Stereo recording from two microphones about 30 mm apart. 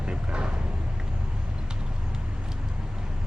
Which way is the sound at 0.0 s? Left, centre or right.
Right.